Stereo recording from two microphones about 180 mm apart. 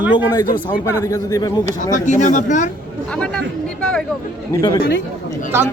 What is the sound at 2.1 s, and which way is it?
Speech, 45° left (ahead or behind).